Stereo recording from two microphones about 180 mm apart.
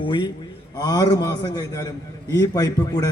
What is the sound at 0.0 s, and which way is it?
A man's voice, 25° left (ahead or behind).